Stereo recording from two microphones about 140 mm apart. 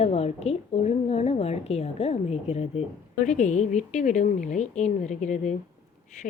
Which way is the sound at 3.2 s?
65° left (ahead or behind).